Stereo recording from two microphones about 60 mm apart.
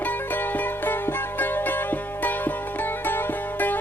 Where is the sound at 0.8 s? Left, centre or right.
Left.